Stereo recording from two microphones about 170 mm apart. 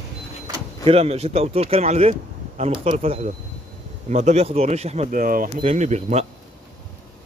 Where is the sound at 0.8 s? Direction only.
35° right (ahead or behind); by 5.5 s 55° right (ahead or behind).